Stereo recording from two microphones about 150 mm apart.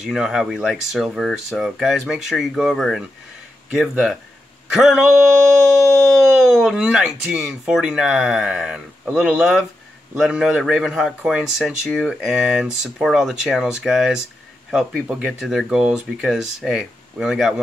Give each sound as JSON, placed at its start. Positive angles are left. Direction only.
{"t": 0.0, "sound": "a man's voice", "side_deg": -5}
{"t": 6.2, "sound": "a man's voice", "side_deg": -5}